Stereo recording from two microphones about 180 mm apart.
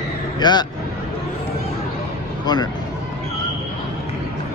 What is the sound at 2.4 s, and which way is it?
Speech, 25° left (ahead or behind).